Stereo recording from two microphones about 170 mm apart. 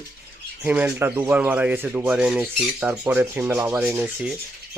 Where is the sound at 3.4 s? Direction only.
20° right (ahead or behind).